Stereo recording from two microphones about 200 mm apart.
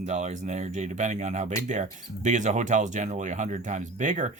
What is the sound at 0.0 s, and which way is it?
Speech, 35° right (ahead or behind).